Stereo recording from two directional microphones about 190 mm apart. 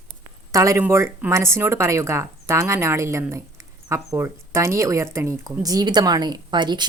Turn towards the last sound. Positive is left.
turn(degrees=-25)  # may be behind; listen again after turning